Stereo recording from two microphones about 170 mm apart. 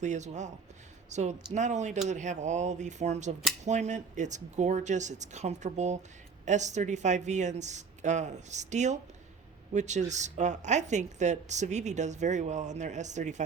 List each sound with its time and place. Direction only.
0.0 s speech: 45° right (ahead or behind)